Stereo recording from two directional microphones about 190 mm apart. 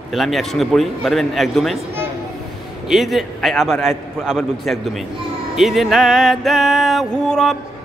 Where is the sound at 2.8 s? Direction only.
Centre (ahead or behind).